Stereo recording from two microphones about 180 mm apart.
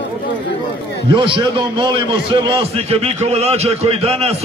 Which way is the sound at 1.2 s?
25° right (ahead or behind).